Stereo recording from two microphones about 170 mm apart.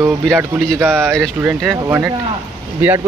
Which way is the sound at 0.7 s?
15° right (ahead or behind).